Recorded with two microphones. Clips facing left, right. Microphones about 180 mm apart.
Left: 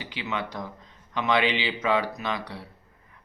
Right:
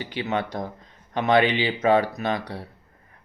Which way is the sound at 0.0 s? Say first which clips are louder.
Right 5 dB; 50° right (ahead or behind).